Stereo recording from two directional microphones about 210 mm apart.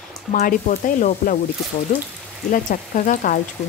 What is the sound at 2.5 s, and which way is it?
Speech, 40° left (ahead or behind).